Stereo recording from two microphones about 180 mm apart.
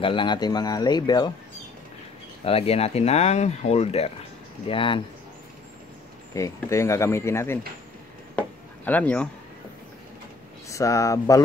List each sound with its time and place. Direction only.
0.0 s speech: 25° left (ahead or behind)
2.4 s speech: 35° left (ahead or behind)
6.3 s speech: 15° left (ahead or behind)
8.4 s chop: 10° left (ahead or behind)
10.7 s speech: 15° left (ahead or behind)